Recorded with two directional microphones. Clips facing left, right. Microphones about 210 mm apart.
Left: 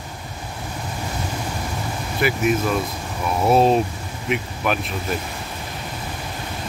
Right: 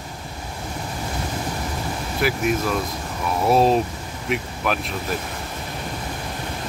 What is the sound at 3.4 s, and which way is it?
Speech, centre (ahead or behind).